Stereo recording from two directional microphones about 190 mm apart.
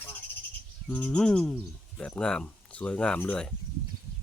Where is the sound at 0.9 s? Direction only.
5° left (ahead or behind).